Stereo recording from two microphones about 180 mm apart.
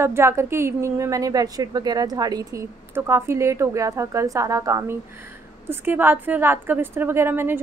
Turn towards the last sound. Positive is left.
turn(degrees=-10)  # may be behind; listen again after turning